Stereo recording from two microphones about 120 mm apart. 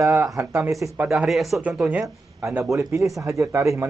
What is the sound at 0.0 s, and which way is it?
Speech, 20° right (ahead or behind).